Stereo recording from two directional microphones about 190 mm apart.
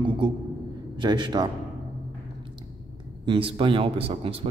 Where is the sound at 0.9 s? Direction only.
25° right (ahead or behind).